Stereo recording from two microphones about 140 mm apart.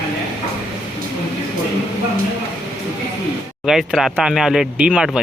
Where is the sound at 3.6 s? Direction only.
Centre (ahead or behind).